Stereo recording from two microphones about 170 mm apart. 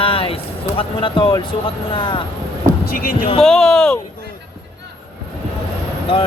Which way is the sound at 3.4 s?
5° left (ahead or behind).